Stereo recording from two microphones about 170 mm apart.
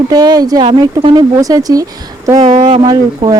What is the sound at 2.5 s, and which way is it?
Speech, 45° right (ahead or behind).